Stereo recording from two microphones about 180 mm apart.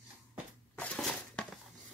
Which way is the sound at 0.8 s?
Centre (ahead or behind).